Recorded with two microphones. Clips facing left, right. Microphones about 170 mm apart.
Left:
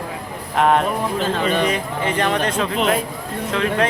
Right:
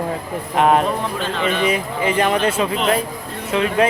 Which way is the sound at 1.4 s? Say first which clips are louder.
Right 1 dB; 40° left (ahead or behind).